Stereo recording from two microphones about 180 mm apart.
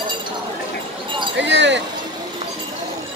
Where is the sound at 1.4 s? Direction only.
80° right.